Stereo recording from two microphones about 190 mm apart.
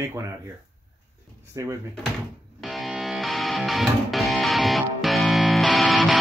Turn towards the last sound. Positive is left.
turn(degrees=0)  # may be behind; listen again after turning